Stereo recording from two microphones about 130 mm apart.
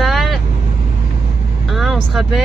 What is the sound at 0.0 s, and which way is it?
Vehicle, centre (ahead or behind).